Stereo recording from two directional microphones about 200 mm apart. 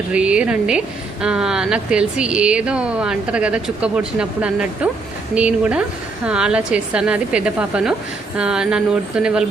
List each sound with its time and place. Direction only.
0.1 s speech: 5° right (ahead or behind)